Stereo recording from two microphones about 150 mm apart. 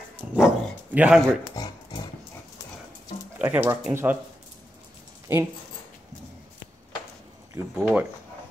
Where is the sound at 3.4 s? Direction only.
15° right (ahead or behind).